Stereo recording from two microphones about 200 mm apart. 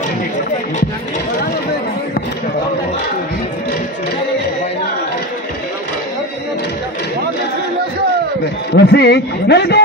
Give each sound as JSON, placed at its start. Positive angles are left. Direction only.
{"t": 8.7, "sound": "a man's voice", "side_deg": 55}